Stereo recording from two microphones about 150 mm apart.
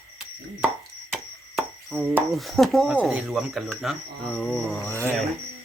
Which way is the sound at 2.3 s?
Centre (ahead or behind).